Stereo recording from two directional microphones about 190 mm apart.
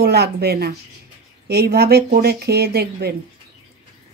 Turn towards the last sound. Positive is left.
turn(degrees=-55)  # may be behind; listen again after turning